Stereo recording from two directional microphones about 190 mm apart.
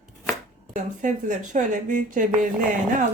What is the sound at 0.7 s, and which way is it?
Speech, 40° right (ahead or behind).